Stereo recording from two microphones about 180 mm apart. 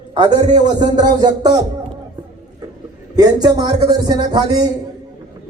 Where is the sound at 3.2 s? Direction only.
20° right (ahead or behind).